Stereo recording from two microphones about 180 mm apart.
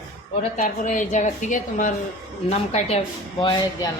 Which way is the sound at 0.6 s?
45° left (ahead or behind).